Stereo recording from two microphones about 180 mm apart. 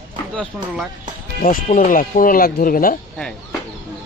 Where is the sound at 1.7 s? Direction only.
50° left (ahead or behind).